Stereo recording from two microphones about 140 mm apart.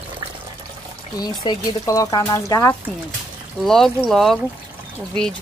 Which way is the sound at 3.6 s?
Centre (ahead or behind).